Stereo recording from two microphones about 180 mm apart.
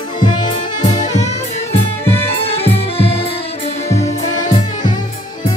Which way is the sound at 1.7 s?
15° left (ahead or behind).